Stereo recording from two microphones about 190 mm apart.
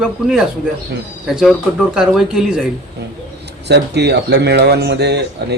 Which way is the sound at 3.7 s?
60° right (ahead or behind).